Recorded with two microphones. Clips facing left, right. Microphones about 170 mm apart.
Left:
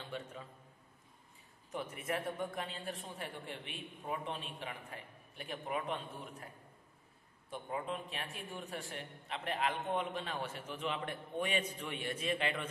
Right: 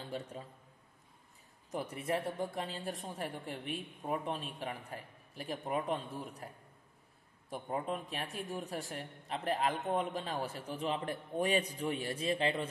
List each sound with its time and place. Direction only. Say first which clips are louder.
0.0 s a man's voice: right 3 dB; 35° right (ahead or behind)
1.7 s a man's voice: right 3 dB; 35° right (ahead or behind)
7.4 s a man's voice: right 3 dB; 40° right (ahead or behind)